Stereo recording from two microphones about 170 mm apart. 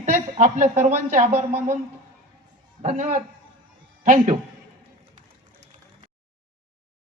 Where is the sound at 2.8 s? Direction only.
45° right (ahead or behind).